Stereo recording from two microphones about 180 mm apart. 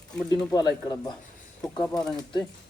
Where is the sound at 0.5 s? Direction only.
25° left (ahead or behind).